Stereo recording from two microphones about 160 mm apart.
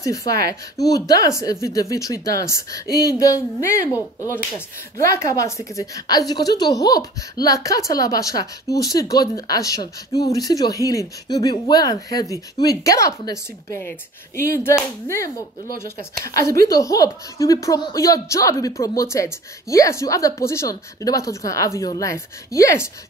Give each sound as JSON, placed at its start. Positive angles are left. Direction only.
{"t": 0.0, "sound": "speech", "side_deg": 20}
{"t": 0.3, "sound": "speech", "side_deg": -80}
{"t": 0.7, "sound": "speech", "side_deg": 25}
{"t": 16.6, "sound": "speech", "side_deg": 20}